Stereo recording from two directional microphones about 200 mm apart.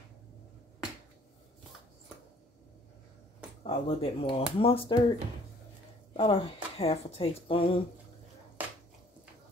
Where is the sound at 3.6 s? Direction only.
30° left (ahead or behind).